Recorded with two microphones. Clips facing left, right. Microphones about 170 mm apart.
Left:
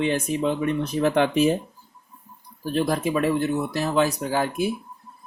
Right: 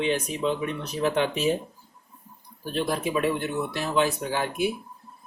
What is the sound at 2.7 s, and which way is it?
Speech, 45° left (ahead or behind).